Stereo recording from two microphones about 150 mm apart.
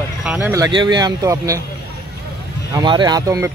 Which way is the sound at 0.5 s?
25° right (ahead or behind).